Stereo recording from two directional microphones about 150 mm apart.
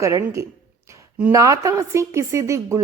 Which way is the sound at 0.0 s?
20° right (ahead or behind).